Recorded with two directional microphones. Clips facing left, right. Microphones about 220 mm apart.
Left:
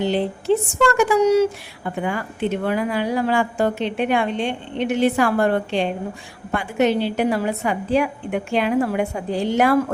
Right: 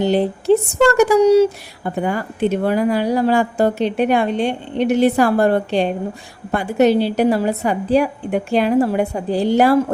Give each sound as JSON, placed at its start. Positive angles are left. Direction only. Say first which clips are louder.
{"t": 0.0, "sound": "speech", "louder": "right 4 dB", "side_deg": -40}